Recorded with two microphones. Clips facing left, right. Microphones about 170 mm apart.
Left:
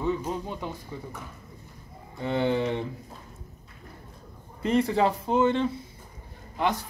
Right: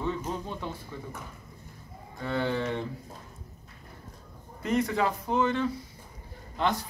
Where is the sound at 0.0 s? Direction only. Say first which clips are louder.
Left 3 dB; 15° left (ahead or behind).